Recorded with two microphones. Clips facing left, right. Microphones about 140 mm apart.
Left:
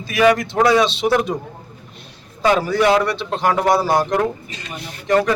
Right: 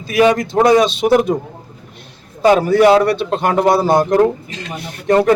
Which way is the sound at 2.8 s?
30° right (ahead or behind).